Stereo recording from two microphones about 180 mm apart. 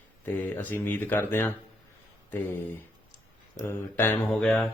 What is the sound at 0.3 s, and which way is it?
Speech, 10° left (ahead or behind).